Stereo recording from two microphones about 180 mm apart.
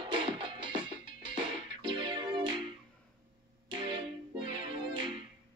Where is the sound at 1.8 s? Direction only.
25° right (ahead or behind).